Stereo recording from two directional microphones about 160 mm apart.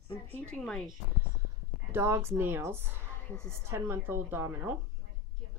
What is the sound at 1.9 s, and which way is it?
A woman's voice, 15° right (ahead or behind).